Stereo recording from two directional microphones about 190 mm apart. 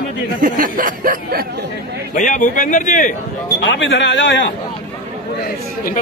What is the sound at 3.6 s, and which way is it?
Speech, 70° left (ahead or behind).